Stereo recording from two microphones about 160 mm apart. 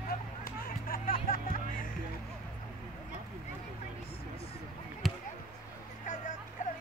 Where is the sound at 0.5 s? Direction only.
65° left (ahead or behind).